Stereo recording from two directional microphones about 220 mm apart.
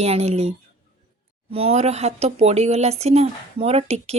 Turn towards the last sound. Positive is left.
turn(degrees=-30)  # may be behind; listen again after turning